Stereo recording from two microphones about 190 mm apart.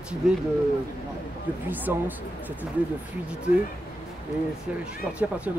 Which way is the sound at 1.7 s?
10° right (ahead or behind).